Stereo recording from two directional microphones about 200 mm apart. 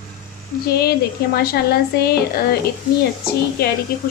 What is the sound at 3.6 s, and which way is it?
Speech, 50° left (ahead or behind).